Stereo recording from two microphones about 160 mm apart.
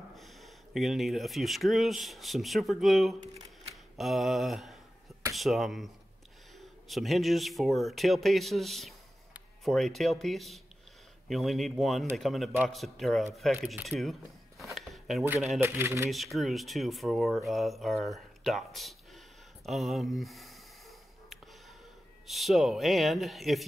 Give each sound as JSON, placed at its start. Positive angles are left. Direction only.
{"t": 0.1, "sound": "speech", "side_deg": 0}
{"t": 14.6, "sound": "a sound", "side_deg": 0}
{"t": 15.6, "sound": "speech", "side_deg": -15}
{"t": 16.1, "sound": "speech", "side_deg": 0}
{"t": 22.3, "sound": "speech", "side_deg": 0}